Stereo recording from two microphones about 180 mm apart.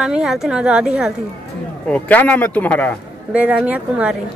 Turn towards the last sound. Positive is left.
turn(degrees=-10)  # may be behind; listen again after turning